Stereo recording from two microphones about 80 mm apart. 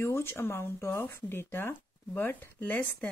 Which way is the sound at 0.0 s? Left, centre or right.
Left.